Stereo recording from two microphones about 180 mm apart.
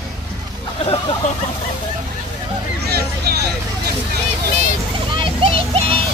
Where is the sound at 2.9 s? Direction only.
65° right (ahead or behind).